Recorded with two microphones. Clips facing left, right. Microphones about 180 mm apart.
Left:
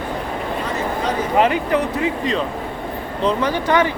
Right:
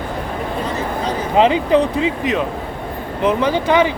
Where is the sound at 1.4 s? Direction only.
20° right (ahead or behind).